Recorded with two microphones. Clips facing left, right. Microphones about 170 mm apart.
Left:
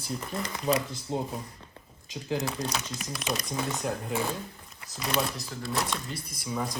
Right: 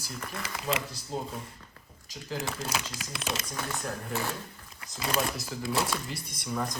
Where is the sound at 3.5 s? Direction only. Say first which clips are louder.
Left 4 dB; 15° left (ahead or behind).